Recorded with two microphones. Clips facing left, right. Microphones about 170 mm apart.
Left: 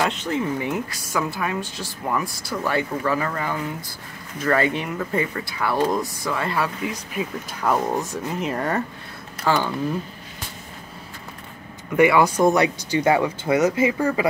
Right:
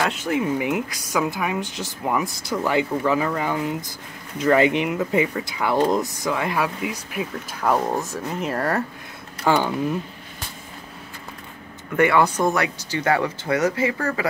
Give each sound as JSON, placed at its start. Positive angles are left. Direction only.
{"t": 0.0, "sound": "speech", "side_deg": -10}
{"t": 9.5, "sound": "speech", "side_deg": -15}
{"t": 12.0, "sound": "speech", "side_deg": 10}